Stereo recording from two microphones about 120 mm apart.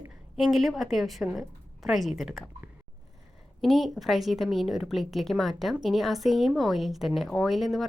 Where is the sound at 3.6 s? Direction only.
Centre (ahead or behind).